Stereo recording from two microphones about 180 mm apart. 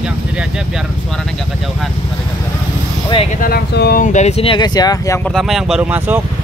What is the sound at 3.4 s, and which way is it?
Speech, 60° left (ahead or behind).